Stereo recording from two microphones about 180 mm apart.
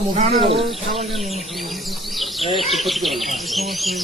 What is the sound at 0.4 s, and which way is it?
Speech, 35° right (ahead or behind).